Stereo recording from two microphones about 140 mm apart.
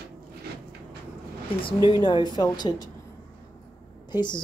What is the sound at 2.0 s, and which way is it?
Speech, 35° left (ahead or behind).